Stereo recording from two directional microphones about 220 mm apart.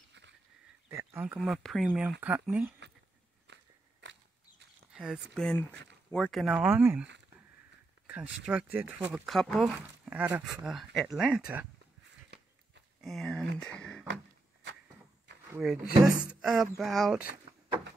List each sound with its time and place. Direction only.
0.9 s speech: 10° right (ahead or behind)
3.5 s biting: 55° right (ahead or behind)
4.0 s a sound: 55° right (ahead or behind)
4.9 s speech: 5° right (ahead or behind)
8.1 s speech: 5° right (ahead or behind)
13.0 s a sound: centre (ahead or behind)
15.5 s speech: centre (ahead or behind)